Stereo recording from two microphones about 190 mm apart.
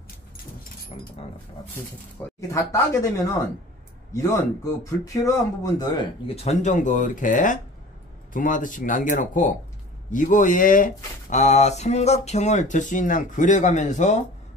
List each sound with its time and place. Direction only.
2.1 s speech: 10° left (ahead or behind)
4.8 s speech: 15° left (ahead or behind); by 14.2 s 40° left (ahead or behind)